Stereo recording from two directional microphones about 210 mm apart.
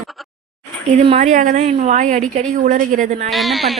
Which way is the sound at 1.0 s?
30° right (ahead or behind).